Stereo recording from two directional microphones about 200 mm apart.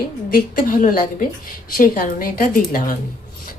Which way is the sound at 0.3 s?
45° left (ahead or behind).